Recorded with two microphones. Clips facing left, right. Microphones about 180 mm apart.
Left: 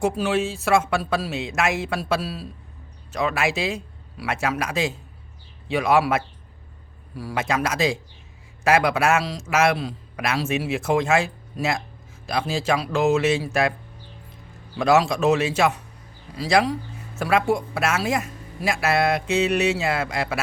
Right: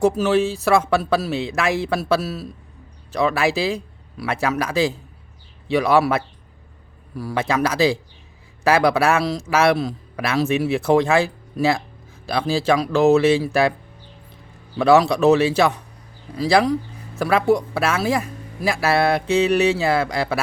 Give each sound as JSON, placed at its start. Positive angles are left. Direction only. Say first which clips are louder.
{"t": 0.0, "sound": "a man's voice", "louder": "right 5 dB", "side_deg": -35}
{"t": 14.8, "sound": "a man's voice", "louder": "right 4 dB", "side_deg": -35}